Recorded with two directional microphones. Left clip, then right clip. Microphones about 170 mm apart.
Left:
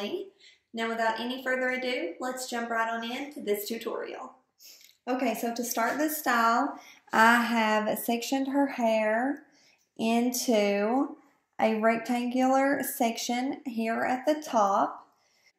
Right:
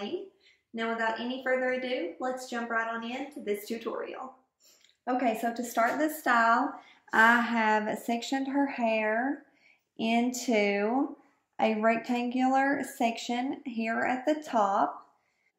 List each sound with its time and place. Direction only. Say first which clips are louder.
0.7 s speech: left 2 dB; 10° left (ahead or behind); by 6.6 s 30° left (ahead or behind)
6.8 s speech: left 1 dB; 50° left (ahead or behind); by 14.9 s 20° left (ahead or behind)